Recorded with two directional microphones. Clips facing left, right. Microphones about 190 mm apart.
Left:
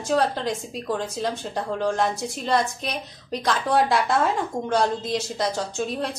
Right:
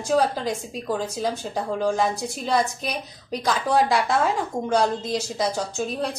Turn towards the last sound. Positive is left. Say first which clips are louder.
# even
turn(degrees=0)  # may be behind; listen again after turning